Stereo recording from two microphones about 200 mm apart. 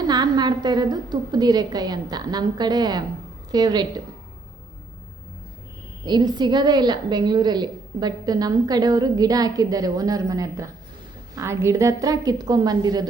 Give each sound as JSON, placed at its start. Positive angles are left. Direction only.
{"t": 0.1, "sound": "a woman's voice", "side_deg": -20}
{"t": 6.1, "sound": "a woman's voice", "side_deg": -20}